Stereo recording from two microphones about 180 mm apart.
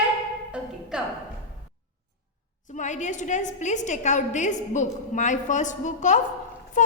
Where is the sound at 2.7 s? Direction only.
40° left (ahead or behind).